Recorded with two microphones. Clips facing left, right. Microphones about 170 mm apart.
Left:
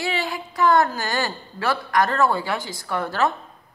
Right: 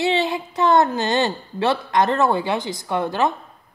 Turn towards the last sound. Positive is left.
turn(degrees=-20)  # may be behind; listen again after turning